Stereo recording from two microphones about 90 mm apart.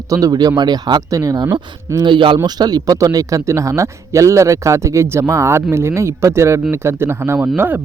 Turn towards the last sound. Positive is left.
turn(degrees=-20)  # may be behind; listen again after turning